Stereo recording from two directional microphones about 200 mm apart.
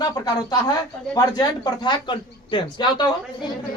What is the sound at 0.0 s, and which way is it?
A man's voice, 20° left (ahead or behind).